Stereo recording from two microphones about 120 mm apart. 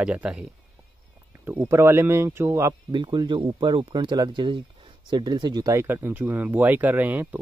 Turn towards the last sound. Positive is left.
turn(degrees=-15)  # may be behind; listen again after turning